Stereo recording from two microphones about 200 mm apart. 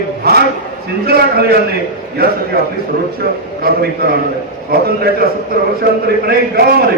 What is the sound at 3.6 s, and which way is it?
A man's voice, 50° right (ahead or behind).